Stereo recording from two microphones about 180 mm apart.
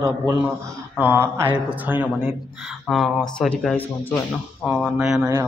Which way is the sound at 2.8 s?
Centre (ahead or behind).